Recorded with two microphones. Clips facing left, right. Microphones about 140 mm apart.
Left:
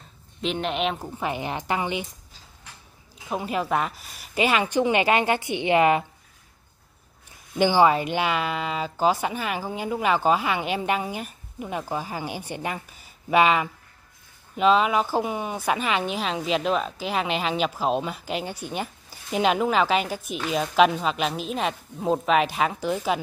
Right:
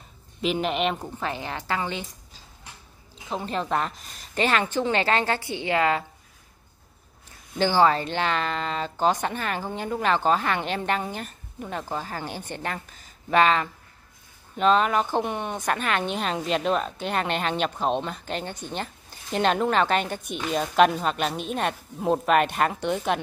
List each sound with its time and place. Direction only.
0.4 s speech: centre (ahead or behind)
1.2 s speech: 15° left (ahead or behind)
3.3 s speech: 10° left (ahead or behind)
7.5 s speech: 15° left (ahead or behind)